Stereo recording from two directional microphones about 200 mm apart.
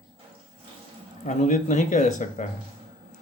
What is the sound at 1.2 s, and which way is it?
Speech, 40° left (ahead or behind).